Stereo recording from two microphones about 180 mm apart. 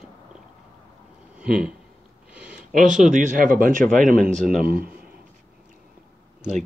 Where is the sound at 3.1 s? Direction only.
50° right (ahead or behind).